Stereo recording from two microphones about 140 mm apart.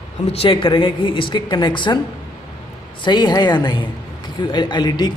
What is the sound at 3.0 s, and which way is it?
A man's voice, 30° left (ahead or behind).